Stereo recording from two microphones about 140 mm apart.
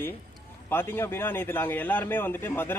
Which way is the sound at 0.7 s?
15° left (ahead or behind).